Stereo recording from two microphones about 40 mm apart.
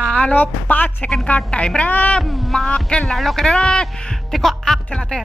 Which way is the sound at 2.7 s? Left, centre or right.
Left.